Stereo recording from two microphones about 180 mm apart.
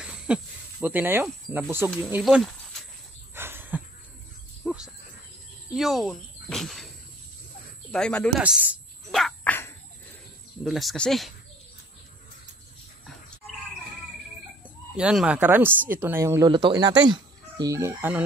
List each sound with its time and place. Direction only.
0.0 s snake: 5° right (ahead or behind)
2.0 s speech: 10° right (ahead or behind)
2.2 s speech: centre (ahead or behind)
3.3 s a sound: 10° right (ahead or behind)
4.6 s cricket: 5° right (ahead or behind)
5.8 s speech: centre (ahead or behind)
7.9 s speech: 5° left (ahead or behind)
8.4 s a sound: 10° right (ahead or behind); by 9.7 s 10° left (ahead or behind)
10.6 s speech: centre (ahead or behind)
15.0 s speech: 5° right (ahead or behind)